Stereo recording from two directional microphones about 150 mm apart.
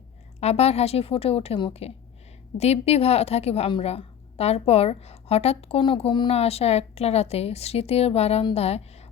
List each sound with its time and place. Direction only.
0.3 s a woman's voice: 45° left (ahead or behind)